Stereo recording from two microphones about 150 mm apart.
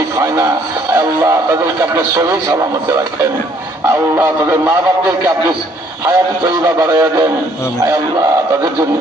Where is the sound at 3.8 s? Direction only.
20° right (ahead or behind).